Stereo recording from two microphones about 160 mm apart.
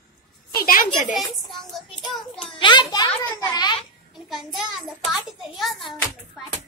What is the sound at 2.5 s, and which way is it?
A woman's voice, 30° left (ahead or behind).